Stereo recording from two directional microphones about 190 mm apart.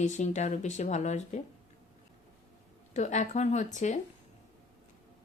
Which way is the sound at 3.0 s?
40° left (ahead or behind).